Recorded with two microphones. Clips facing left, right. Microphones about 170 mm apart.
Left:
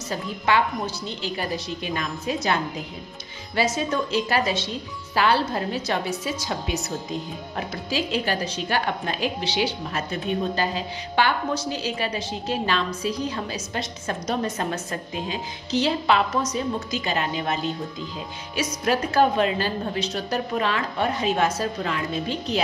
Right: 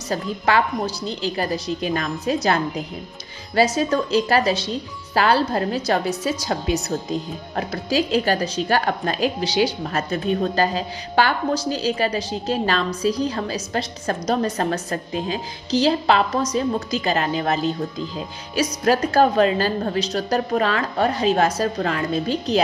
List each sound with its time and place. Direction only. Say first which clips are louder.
0.5 s a woman's voice: right 2 dB; 40° right (ahead or behind)
18.6 s a woman's voice: right 5 dB; 40° right (ahead or behind)